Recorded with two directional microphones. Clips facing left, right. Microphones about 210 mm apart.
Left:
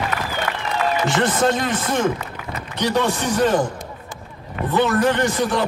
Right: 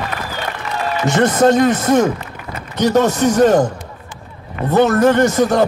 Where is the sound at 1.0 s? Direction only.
40° right (ahead or behind).